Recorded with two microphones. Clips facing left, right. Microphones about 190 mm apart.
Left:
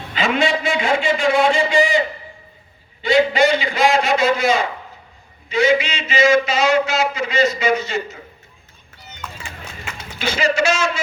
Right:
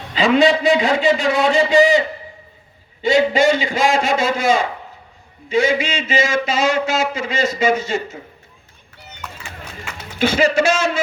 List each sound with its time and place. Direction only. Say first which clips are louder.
0.1 s a man's voice: right 5 dB; 35° right (ahead or behind)
3.4 s a man's voice: even; 45° right (ahead or behind)
10.2 s a man's voice: right 4 dB; 50° right (ahead or behind)